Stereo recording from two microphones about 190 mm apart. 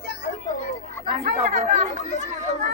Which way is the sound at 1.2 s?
40° right (ahead or behind).